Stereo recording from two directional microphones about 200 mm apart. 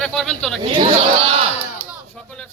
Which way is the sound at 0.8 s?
30° right (ahead or behind).